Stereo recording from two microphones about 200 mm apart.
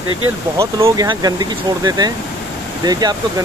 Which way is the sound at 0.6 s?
15° right (ahead or behind).